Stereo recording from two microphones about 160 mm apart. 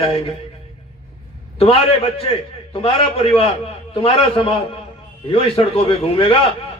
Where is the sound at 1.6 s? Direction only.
35° left (ahead or behind).